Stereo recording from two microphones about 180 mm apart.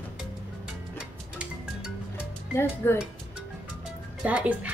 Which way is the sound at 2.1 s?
15° left (ahead or behind).